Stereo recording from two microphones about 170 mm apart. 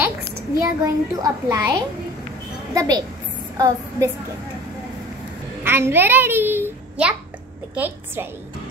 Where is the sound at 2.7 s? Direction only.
20° right (ahead or behind).